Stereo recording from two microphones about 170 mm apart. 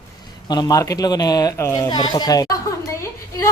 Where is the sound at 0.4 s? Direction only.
25° left (ahead or behind).